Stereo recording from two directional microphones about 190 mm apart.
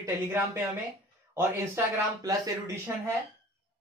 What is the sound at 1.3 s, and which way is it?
Speech, 15° right (ahead or behind).